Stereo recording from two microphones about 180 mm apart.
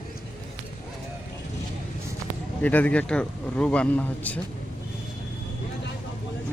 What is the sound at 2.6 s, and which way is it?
Speech, 10° left (ahead or behind).